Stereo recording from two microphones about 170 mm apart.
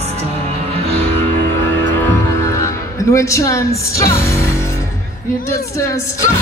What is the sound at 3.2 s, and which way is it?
Speech, 20° left (ahead or behind).